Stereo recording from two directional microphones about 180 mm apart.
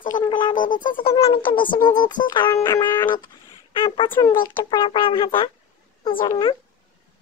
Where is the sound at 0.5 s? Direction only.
50° left (ahead or behind).